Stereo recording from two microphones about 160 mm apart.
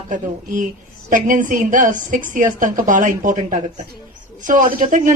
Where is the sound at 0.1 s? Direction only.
55° right (ahead or behind).